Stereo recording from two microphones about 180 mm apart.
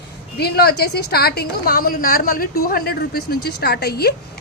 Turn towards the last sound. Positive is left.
turn(degrees=60)  # may be behind; listen again after turning